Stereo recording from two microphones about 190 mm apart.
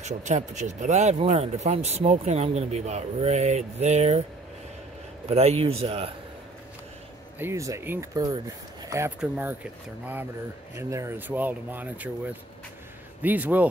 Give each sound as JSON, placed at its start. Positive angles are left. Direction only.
{"t": 0.0, "sound": "speech", "side_deg": -40}
{"t": 5.3, "sound": "speech", "side_deg": -35}
{"t": 7.3, "sound": "speech", "side_deg": -15}
{"t": 10.8, "sound": "speech", "side_deg": -15}